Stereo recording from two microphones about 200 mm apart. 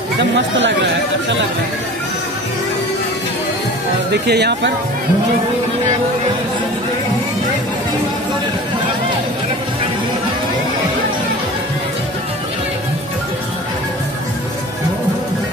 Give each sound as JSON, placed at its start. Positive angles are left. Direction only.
{"t": 0.2, "sound": "speech", "side_deg": -65}
{"t": 4.1, "sound": "speech", "side_deg": -55}